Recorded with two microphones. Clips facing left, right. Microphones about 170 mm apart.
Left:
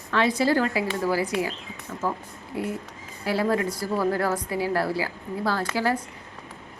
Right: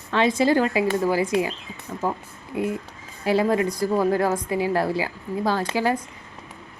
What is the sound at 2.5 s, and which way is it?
A woman's voice, 20° right (ahead or behind).